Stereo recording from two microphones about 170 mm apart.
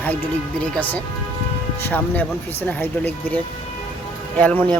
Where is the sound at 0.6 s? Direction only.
10° left (ahead or behind).